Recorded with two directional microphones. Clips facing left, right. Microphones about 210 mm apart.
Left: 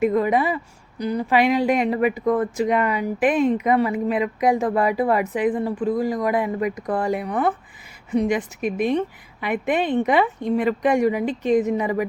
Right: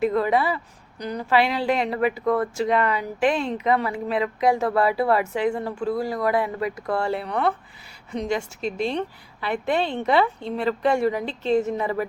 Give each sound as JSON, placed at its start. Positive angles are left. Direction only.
{"t": 0.0, "sound": "a woman's voice", "side_deg": 15}